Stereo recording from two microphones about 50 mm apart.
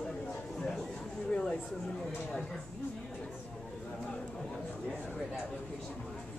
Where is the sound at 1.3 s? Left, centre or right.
Centre.